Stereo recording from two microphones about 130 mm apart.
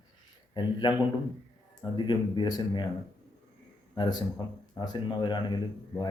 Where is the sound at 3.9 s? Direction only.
35° left (ahead or behind).